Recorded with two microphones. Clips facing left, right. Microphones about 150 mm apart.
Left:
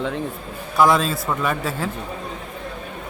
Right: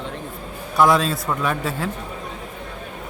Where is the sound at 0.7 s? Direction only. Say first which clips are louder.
Even; centre (ahead or behind).